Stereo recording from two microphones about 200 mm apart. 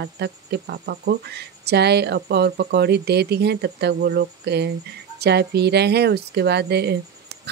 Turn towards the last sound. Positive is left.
turn(degrees=-55)  # may be behind; listen again after turning